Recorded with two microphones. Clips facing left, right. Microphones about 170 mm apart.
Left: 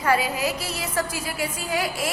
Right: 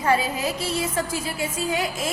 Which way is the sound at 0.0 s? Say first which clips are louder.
Even; 25° right (ahead or behind).